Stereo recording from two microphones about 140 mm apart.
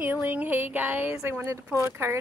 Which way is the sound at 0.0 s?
15° right (ahead or behind).